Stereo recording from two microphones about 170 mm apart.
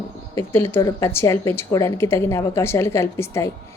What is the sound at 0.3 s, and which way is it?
Speech, 15° left (ahead or behind).